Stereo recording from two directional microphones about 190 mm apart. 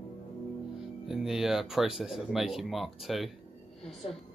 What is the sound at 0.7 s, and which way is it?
Speech, centre (ahead or behind).